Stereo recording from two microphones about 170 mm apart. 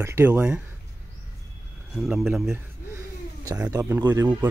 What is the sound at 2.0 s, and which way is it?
Speech, 5° right (ahead or behind).